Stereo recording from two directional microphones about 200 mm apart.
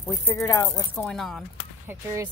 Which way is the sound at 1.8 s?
10° right (ahead or behind).